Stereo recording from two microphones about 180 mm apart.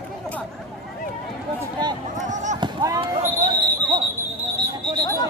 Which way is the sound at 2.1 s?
45° right (ahead or behind).